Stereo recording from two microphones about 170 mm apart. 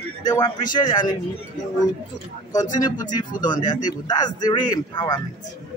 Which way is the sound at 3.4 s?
25° left (ahead or behind).